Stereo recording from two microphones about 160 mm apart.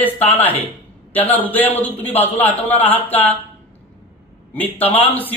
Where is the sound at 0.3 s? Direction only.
10° left (ahead or behind).